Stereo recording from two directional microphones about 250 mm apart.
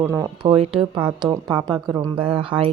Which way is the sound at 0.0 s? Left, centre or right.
Centre.